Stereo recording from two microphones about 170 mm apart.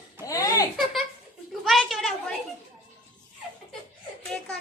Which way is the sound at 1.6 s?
Centre (ahead or behind).